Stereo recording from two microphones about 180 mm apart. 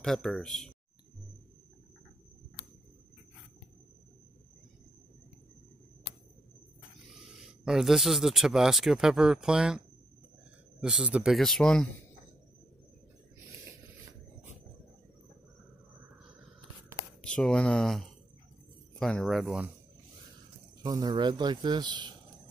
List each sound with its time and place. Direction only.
0.0 s speech: 5° left (ahead or behind)
7.1 s speech: centre (ahead or behind)
10.8 s speech: 5° right (ahead or behind)
17.2 s speech: 5° left (ahead or behind)
20.8 s speech: 20° right (ahead or behind)